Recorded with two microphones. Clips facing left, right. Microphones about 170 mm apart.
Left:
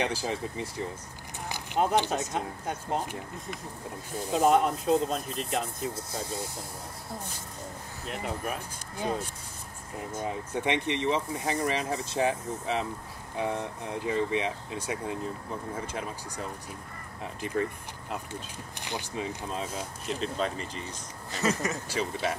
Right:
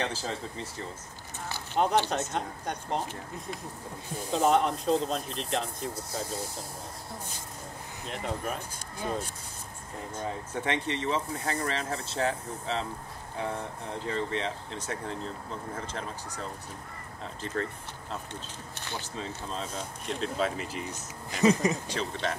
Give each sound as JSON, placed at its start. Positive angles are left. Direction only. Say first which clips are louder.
{"t": 0.0, "sound": "speech", "louder": "left 3 dB", "side_deg": 15}
{"t": 2.0, "sound": "speech", "louder": "even", "side_deg": 10}
{"t": 8.1, "sound": "speech", "louder": "even", "side_deg": 5}
{"t": 10.1, "sound": "speech", "louder": "left 2 dB", "side_deg": 15}
{"t": 21.8, "sound": "speech", "louder": "left 2 dB", "side_deg": 10}